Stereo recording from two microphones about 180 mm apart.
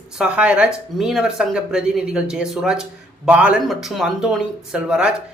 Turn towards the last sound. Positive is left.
turn(degrees=-5)  # may be behind; listen again after turning